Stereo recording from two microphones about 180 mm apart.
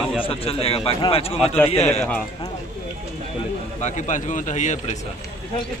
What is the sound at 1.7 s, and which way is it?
Speech, 35° left (ahead or behind).